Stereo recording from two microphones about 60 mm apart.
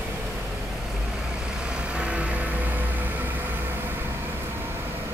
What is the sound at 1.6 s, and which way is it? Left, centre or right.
Vehicle, centre.